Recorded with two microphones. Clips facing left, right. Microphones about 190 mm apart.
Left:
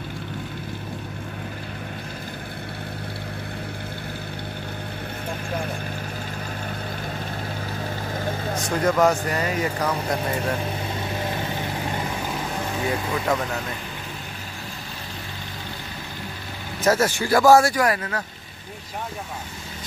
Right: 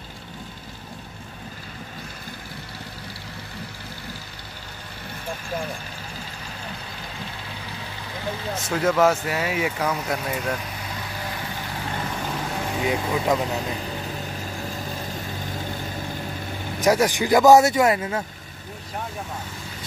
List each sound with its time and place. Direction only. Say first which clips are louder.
8.6 s speech: even; 5° right (ahead or behind)
12.8 s speech: right 2 dB; 15° right (ahead or behind)
16.8 s speech: right 1 dB; 15° right (ahead or behind)